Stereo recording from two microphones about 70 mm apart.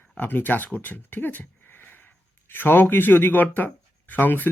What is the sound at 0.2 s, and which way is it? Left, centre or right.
Speech, left.